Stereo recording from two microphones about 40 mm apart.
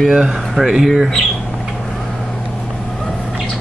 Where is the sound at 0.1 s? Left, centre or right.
Centre.